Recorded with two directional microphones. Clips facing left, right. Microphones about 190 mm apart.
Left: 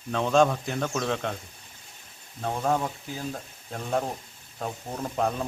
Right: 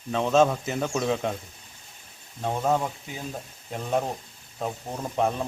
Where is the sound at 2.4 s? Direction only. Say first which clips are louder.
Right 1 dB; 15° right (ahead or behind).